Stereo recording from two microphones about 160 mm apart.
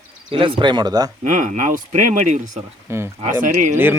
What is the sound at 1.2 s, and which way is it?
Speech, 55° right (ahead or behind).